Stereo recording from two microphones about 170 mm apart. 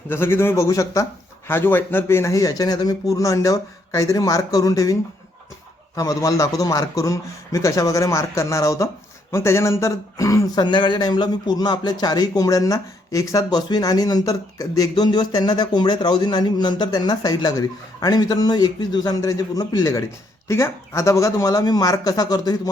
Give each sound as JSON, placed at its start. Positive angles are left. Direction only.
{"t": 0.1, "sound": "a man's voice", "side_deg": 15}
{"t": 6.0, "sound": "speech", "side_deg": 20}